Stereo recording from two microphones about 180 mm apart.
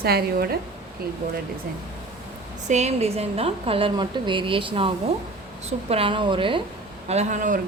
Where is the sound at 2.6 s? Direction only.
40° right (ahead or behind).